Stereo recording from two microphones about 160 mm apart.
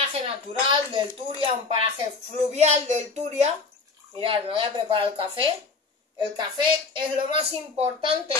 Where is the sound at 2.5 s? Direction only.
45° right (ahead or behind).